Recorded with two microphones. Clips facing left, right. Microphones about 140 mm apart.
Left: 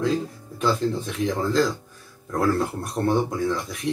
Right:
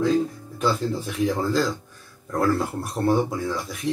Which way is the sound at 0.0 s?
Centre (ahead or behind).